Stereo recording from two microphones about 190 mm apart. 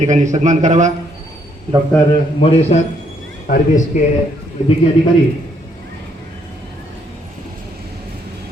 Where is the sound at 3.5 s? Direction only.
45° left (ahead or behind).